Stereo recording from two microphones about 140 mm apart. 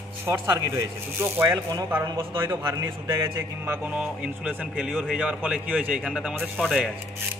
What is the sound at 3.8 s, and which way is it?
A man's voice, 10° right (ahead or behind).